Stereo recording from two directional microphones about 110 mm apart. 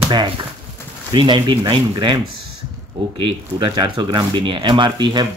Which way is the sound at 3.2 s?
45° right (ahead or behind).